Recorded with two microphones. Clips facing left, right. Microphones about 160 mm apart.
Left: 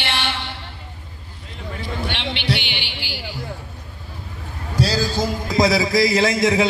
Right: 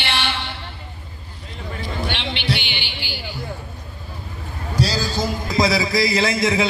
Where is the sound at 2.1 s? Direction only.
70° left (ahead or behind); by 3.3 s 85° left.